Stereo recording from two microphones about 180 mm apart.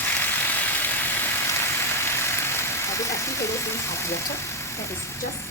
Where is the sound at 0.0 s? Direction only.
10° left (ahead or behind).